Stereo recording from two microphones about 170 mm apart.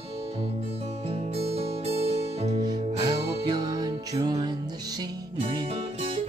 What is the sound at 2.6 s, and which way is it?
Music, 25° right (ahead or behind).